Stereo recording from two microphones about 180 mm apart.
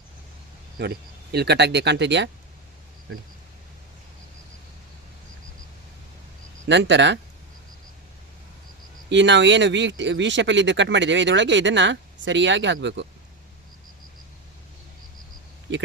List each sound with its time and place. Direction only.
0.8 s speech: 65° right (ahead or behind)
6.7 s speech: 75° right (ahead or behind)
9.0 s speech: 80° right